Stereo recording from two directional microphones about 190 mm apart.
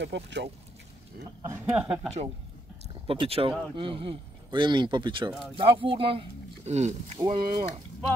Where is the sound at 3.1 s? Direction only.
30° right (ahead or behind).